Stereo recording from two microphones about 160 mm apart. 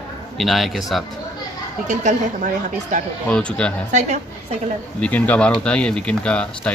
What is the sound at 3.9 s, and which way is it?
Speech, 45° right (ahead or behind).